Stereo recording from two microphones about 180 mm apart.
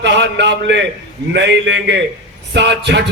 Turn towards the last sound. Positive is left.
turn(degrees=-75)  # may be behind; listen again after turning